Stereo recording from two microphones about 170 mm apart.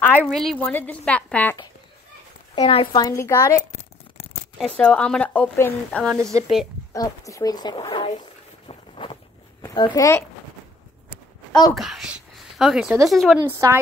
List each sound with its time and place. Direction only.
0.0 s a woman's voice: 10° left (ahead or behind)
2.5 s speech: 35° left (ahead or behind); by 3.6 s 15° left (ahead or behind)
4.6 s speech: 5° left (ahead or behind)
6.9 s speech: 20° left (ahead or behind)
8.6 s boat: 30° left (ahead or behind)
9.8 s speech: 20° left (ahead or behind)
11.7 s speech: centre (ahead or behind)
13.4 s a woman's voice: 20° right (ahead or behind)